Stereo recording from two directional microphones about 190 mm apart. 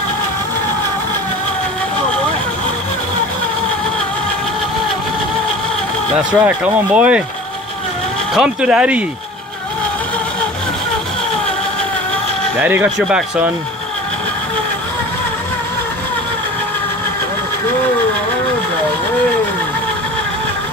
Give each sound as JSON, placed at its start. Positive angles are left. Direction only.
{"t": 6.1, "sound": "speech", "side_deg": -5}
{"t": 8.4, "sound": "speech", "side_deg": -5}
{"t": 12.5, "sound": "speech", "side_deg": -10}